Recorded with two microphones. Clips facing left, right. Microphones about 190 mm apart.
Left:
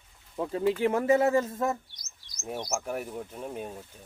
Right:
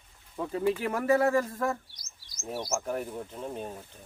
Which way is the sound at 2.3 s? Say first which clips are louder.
Even; 20° left (ahead or behind).